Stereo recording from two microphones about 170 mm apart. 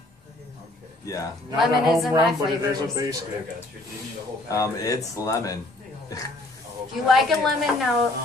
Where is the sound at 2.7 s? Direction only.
20° right (ahead or behind).